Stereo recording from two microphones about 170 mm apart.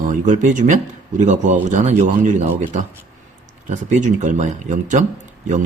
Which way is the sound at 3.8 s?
45° right (ahead or behind).